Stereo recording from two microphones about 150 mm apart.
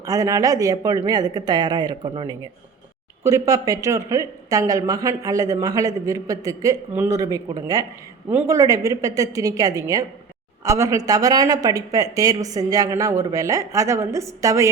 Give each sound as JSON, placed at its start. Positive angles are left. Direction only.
{"t": 0.0, "sound": "speech", "side_deg": -25}
{"t": 3.2, "sound": "speech", "side_deg": -20}